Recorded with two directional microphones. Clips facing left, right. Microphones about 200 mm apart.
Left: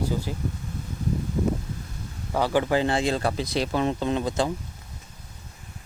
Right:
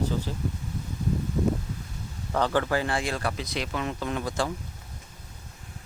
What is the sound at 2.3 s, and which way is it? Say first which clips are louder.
Speech: left 2 dB; 10° left (ahead or behind).